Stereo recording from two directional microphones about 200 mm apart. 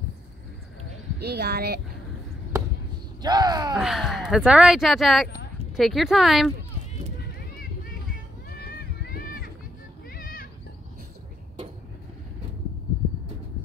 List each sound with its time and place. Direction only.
1.2 s a child's voice: 55° right (ahead or behind)
2.5 s a sound: 15° right (ahead or behind)
3.2 s speech: 20° right (ahead or behind)
3.7 s speech: centre (ahead or behind)
8.5 s run: 50° left (ahead or behind)
10.0 s children playing: 45° left (ahead or behind)